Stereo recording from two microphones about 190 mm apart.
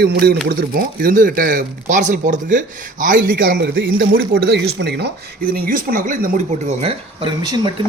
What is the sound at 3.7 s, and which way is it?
Speech, 75° right (ahead or behind).